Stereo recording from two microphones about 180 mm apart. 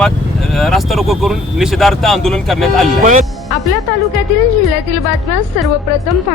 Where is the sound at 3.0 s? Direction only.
45° right (ahead or behind).